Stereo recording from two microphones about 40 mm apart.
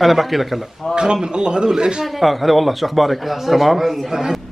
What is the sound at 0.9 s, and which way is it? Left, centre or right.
Speech, centre.